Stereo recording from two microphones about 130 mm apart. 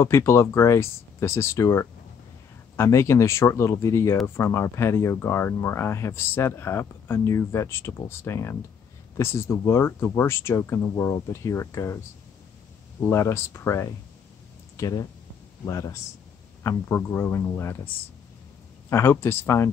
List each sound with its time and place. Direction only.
0.0 s speech: 20° left (ahead or behind)
13.0 s speech: 25° left (ahead or behind)
18.9 s speech: 20° left (ahead or behind)